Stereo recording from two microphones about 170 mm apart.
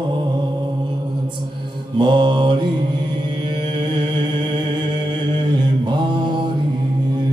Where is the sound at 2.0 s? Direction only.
30° right (ahead or behind).